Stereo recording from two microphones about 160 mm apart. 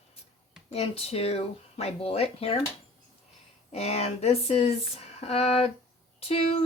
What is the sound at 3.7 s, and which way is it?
Speech, 40° left (ahead or behind).